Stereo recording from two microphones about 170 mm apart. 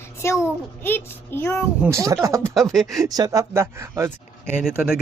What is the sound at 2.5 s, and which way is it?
Speech, centre (ahead or behind).